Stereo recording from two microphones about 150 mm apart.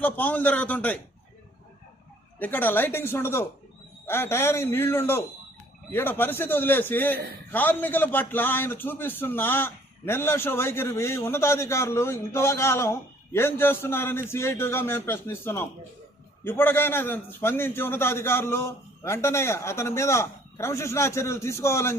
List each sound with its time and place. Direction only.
0.0 s a man's voice: 10° left (ahead or behind)
2.4 s a man's voice: 15° left (ahead or behind)